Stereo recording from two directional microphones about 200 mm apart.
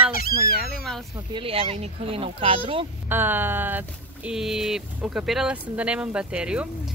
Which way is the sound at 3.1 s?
10° right (ahead or behind).